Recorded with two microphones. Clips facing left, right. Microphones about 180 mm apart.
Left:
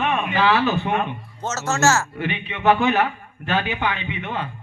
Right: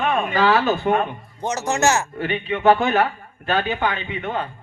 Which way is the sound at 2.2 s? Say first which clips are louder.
Right 5 dB; 40° right (ahead or behind).